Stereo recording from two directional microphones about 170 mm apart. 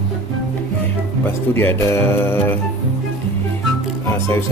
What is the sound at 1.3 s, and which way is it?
Speech, 10° left (ahead or behind).